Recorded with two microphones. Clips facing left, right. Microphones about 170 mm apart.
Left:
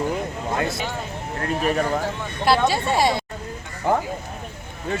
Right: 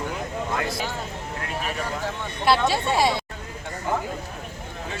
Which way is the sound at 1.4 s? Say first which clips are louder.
Left 9 dB; 45° left (ahead or behind).